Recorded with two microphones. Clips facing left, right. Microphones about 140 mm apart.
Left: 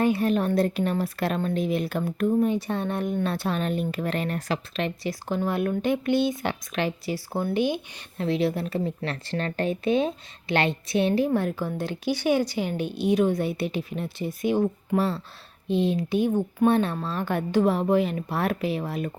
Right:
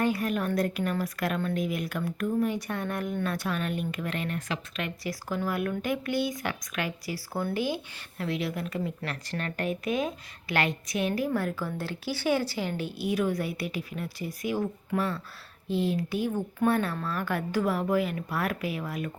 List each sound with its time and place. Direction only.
0.0 s a woman's voice: 25° left (ahead or behind)